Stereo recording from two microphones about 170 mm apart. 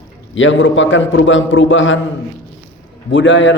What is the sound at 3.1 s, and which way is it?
Speech, 90° left.